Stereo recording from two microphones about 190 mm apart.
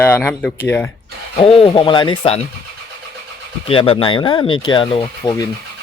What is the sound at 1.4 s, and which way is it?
Speech, 30° left (ahead or behind).